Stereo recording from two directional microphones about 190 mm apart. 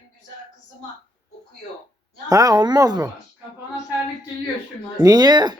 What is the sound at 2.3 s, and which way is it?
Speech, 20° right (ahead or behind).